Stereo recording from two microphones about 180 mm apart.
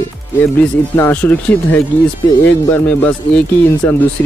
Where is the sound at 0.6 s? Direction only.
10° left (ahead or behind).